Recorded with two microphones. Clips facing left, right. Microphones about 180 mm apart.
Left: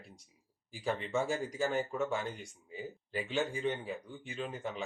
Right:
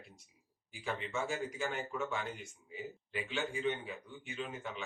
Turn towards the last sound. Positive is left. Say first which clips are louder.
# left 3 dB
turn(degrees=35)  # may be behind; listen again after turning